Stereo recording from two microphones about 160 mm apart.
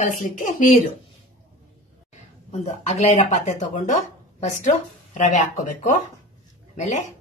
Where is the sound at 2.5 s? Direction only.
45° left (ahead or behind).